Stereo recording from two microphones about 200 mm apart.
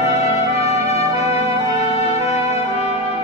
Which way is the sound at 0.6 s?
30° left (ahead or behind).